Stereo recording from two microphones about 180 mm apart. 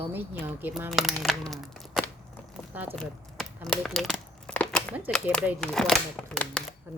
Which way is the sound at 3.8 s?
Centre (ahead or behind).